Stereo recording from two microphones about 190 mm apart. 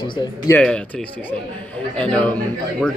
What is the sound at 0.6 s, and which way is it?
A man's voice, 5° left (ahead or behind).